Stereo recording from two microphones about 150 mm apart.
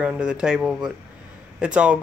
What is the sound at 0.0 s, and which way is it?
Speech, 5° right (ahead or behind).